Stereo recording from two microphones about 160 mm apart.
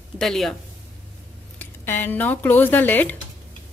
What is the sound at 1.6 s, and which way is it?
Speech, 15° left (ahead or behind).